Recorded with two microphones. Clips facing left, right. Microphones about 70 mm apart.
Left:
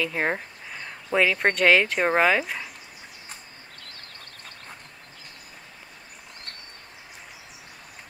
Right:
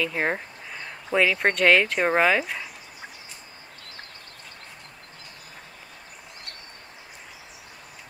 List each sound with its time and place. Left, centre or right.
0.0 s speech: centre